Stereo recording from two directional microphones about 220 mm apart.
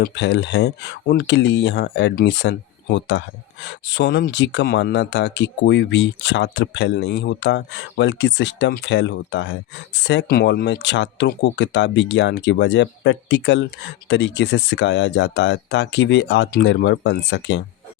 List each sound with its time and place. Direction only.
0.0 s speech: 50° left (ahead or behind)